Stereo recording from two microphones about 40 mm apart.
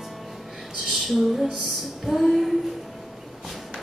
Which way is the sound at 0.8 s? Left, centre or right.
Centre.